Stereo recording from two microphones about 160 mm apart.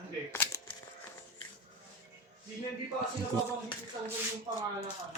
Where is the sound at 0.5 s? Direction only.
20° left (ahead or behind).